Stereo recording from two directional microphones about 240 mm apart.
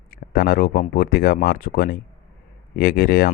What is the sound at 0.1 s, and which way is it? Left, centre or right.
Speech, left.